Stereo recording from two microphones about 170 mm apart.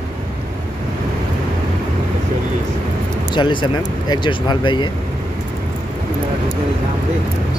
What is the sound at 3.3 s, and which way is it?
Speech, 30° left (ahead or behind).